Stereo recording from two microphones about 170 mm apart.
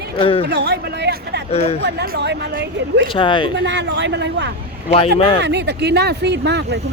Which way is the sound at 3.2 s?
30° left (ahead or behind).